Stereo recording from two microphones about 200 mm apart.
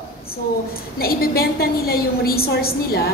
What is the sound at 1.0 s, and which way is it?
A woman's voice, 50° left (ahead or behind).